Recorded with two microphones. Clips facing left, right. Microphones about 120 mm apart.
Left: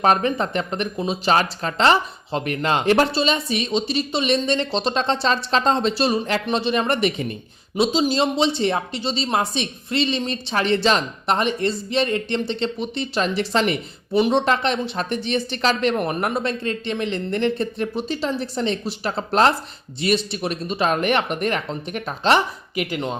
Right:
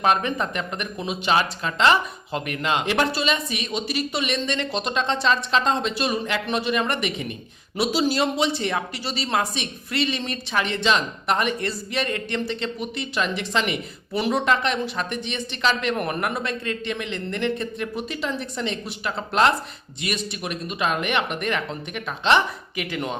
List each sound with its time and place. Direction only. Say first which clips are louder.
0.0 s speech: left 3 dB; 35° left (ahead or behind)
7.8 s speech: left 3 dB; 25° left (ahead or behind)
16.0 s speech: left 3 dB; 25° left (ahead or behind)